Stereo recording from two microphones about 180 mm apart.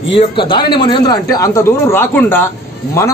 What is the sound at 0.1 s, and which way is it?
A man's voice, 30° left (ahead or behind).